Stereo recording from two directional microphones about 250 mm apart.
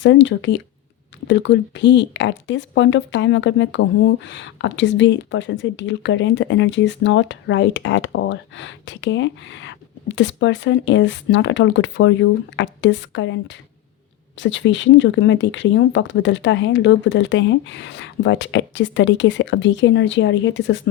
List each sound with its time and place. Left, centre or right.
0.0 s speech: left